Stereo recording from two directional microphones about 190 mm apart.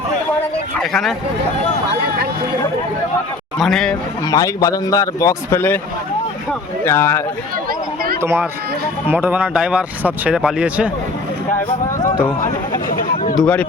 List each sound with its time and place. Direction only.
0.8 s speech: 5° left (ahead or behind)
3.6 s speech: centre (ahead or behind)
4.3 s speech: 20° left (ahead or behind)
8.2 s speech: 10° right (ahead or behind)
13.3 s speech: 5° left (ahead or behind)